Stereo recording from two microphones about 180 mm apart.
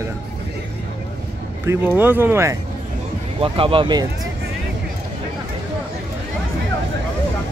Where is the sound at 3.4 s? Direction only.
30° right (ahead or behind).